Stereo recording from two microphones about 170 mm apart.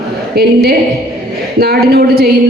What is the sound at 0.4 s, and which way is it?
Speech, 65° right (ahead or behind).